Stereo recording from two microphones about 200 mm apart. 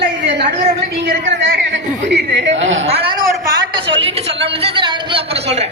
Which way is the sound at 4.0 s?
30° right (ahead or behind).